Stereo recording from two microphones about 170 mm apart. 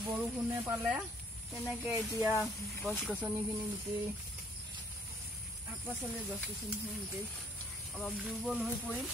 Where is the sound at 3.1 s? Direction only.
15° right (ahead or behind).